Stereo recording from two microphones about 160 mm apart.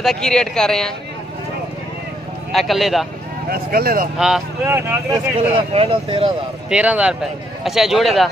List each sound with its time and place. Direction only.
0.0 s speech: 5° left (ahead or behind)
2.5 s speech: centre (ahead or behind)
3.4 s speech: 70° right (ahead or behind)
4.6 s speech: 15° right (ahead or behind)
5.7 s speech: 35° right (ahead or behind)
6.7 s speech: 5° right (ahead or behind)